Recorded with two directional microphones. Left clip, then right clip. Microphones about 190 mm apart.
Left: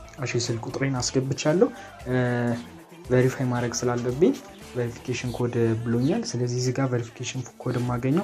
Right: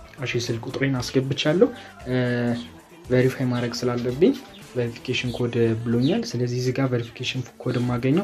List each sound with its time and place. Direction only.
0.2 s speech: 5° left (ahead or behind)
0.7 s speech: 5° right (ahead or behind)
1.0 s speech: 20° right (ahead or behind)
1.4 s speech: centre (ahead or behind)